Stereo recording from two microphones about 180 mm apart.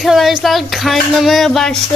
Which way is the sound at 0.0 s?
Centre (ahead or behind).